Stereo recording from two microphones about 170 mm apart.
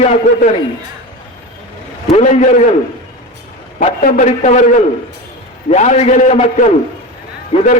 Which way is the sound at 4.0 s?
50° left (ahead or behind).